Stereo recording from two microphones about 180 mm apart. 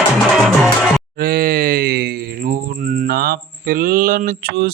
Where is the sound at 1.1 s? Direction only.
55° right (ahead or behind).